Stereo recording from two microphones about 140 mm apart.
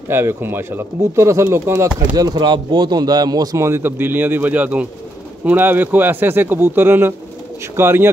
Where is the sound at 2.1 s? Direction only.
30° right (ahead or behind).